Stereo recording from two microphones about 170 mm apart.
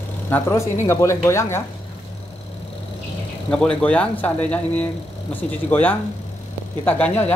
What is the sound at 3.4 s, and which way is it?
Speech, 5° left (ahead or behind).